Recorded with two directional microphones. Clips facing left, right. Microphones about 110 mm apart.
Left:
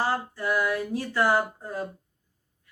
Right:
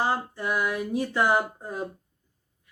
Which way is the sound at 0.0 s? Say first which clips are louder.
Even; 20° right (ahead or behind).